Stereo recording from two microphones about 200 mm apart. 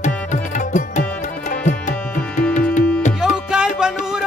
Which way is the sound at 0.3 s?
40° left (ahead or behind).